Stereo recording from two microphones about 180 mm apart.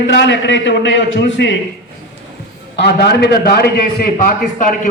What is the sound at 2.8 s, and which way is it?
A man's voice, 65° left (ahead or behind).